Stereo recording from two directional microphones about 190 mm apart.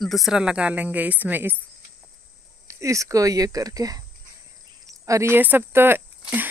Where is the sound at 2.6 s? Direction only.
15° right (ahead or behind).